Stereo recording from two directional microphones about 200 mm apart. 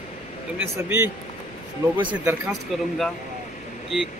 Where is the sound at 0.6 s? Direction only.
10° right (ahead or behind).